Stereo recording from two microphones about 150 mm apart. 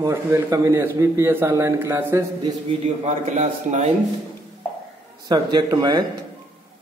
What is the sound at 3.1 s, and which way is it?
Speech, 55° right (ahead or behind).